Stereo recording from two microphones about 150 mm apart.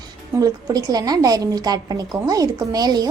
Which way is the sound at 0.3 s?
25° right (ahead or behind).